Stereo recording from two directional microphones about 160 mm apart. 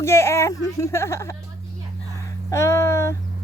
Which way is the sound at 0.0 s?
15° left (ahead or behind).